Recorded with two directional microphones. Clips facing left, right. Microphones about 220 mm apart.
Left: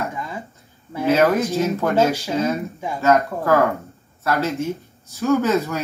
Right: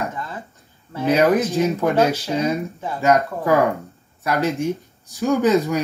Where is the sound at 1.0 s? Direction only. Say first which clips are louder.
Even; 15° right (ahead or behind).